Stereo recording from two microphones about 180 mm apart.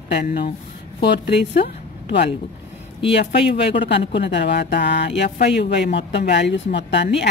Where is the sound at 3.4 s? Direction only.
30° left (ahead or behind).